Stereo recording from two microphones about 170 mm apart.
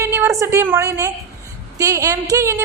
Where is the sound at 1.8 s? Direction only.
20° right (ahead or behind).